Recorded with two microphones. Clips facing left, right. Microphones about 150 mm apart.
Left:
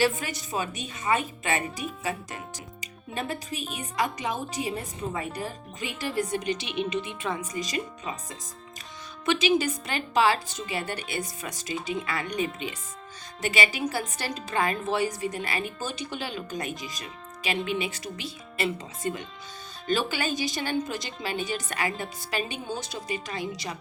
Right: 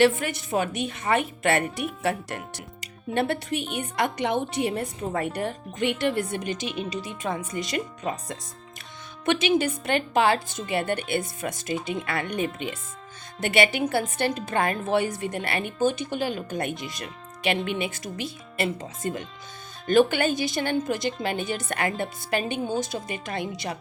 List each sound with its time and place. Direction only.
0.0 s speech: 60° right (ahead or behind); by 7.4 s 45° right (ahead or behind)
7.6 s speech: 65° right (ahead or behind)
9.2 s a woman's voice: 55° right (ahead or behind)